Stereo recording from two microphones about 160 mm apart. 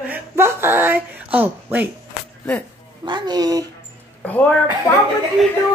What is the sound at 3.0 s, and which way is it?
Speech, 25° right (ahead or behind).